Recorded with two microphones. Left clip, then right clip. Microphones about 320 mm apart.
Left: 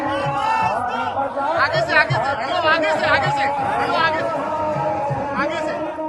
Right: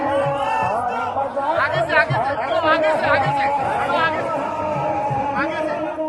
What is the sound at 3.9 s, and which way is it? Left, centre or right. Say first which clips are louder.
Chatter: left 1 dB; centre.